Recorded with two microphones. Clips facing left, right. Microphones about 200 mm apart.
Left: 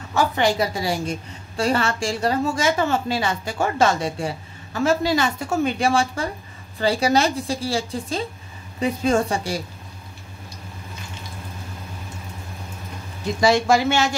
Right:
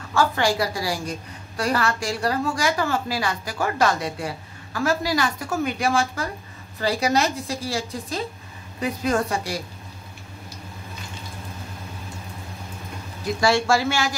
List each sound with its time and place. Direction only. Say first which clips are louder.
0.1 s a woman's voice: left 1 dB; 20° left (ahead or behind)
13.4 s a woman's voice: left 3 dB; 20° left (ahead or behind)